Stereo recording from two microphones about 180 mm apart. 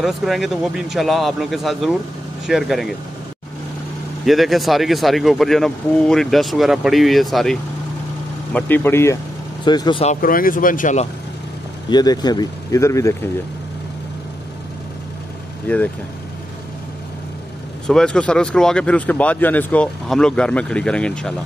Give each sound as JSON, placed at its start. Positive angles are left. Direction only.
{"t": 0.0, "sound": "speech", "side_deg": 0}
{"t": 4.3, "sound": "speech", "side_deg": 0}
{"t": 8.5, "sound": "speech", "side_deg": 10}
{"t": 9.7, "sound": "speech", "side_deg": 25}
{"t": 10.0, "sound": "speech", "side_deg": 50}
{"t": 11.9, "sound": "speech", "side_deg": 20}
{"t": 15.6, "sound": "speech", "side_deg": 10}
{"t": 17.8, "sound": "speech", "side_deg": 5}